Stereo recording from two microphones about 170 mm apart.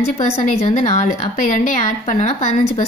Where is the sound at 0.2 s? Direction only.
45° left (ahead or behind).